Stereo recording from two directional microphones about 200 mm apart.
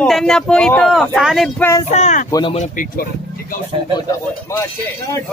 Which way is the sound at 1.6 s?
15° left (ahead or behind).